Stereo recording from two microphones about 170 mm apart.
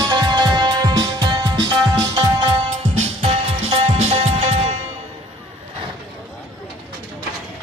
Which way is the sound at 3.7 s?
35° right (ahead or behind).